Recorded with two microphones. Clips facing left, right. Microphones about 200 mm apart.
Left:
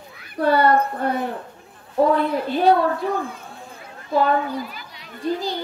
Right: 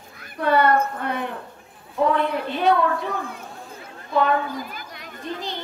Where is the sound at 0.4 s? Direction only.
35° left (ahead or behind).